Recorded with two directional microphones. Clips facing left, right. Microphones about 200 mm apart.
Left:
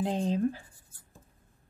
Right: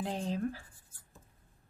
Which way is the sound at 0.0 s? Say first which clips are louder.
Left 6 dB; 20° left (ahead or behind).